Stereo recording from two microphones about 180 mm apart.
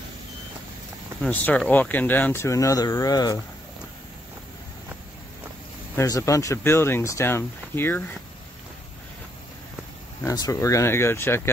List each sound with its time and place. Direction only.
1.2 s speech: 10° left (ahead or behind)
5.9 s speech: 15° left (ahead or behind)
10.2 s speech: 20° left (ahead or behind)